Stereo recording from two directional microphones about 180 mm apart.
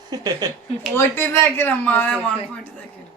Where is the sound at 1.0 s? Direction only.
15° left (ahead or behind).